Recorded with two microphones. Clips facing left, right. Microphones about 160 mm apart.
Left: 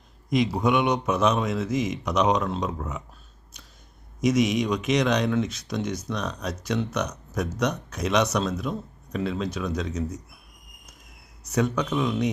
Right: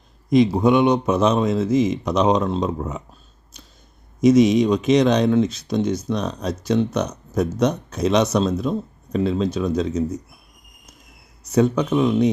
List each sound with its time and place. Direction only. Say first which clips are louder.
0.3 s speech: right 7 dB; 30° right (ahead or behind)
4.2 s speech: right 8 dB; 30° right (ahead or behind)
11.4 s speech: right 7 dB; 25° right (ahead or behind)